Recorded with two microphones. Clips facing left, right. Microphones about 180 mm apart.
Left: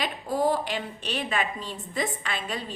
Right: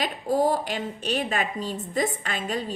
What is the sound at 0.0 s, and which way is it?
A woman's voice, 45° right (ahead or behind).